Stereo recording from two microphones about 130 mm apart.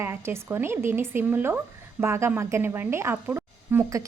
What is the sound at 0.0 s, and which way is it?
A woman's voice, 20° right (ahead or behind).